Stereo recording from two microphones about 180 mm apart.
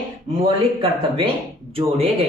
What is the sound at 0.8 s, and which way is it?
Speech, 30° right (ahead or behind).